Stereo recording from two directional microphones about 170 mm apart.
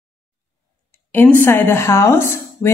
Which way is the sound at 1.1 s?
10° left (ahead or behind).